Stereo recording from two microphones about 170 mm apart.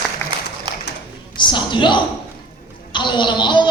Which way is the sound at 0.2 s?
15° left (ahead or behind).